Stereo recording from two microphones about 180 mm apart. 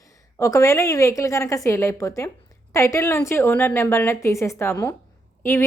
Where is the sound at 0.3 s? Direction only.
15° left (ahead or behind).